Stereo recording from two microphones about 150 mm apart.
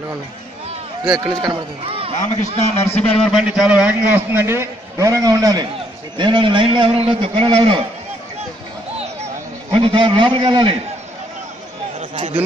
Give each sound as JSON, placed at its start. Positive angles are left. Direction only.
{"t": 1.5, "sound": "a man's voice", "side_deg": -40}
{"t": 2.8, "sound": "a man's voice", "side_deg": 15}
{"t": 3.2, "sound": "a man's voice", "side_deg": 0}
{"t": 8.9, "sound": "a sound", "side_deg": -45}
{"t": 12.0, "sound": "speech", "side_deg": -40}